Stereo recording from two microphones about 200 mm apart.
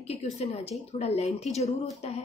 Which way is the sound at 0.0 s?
30° left (ahead or behind).